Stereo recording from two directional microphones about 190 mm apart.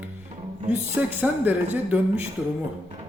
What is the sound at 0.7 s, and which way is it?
Speech, 10° right (ahead or behind).